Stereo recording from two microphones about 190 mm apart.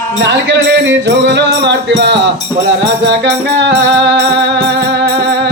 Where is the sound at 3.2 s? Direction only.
65° right (ahead or behind).